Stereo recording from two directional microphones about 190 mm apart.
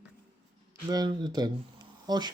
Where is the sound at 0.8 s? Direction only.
20° right (ahead or behind).